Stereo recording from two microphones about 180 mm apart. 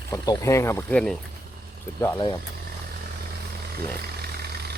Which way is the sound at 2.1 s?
25° left (ahead or behind).